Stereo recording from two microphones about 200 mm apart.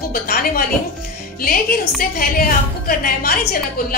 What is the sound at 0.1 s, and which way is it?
A woman's voice, 50° left (ahead or behind).